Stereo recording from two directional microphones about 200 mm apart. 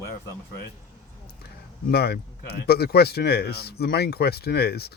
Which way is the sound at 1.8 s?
50° left (ahead or behind).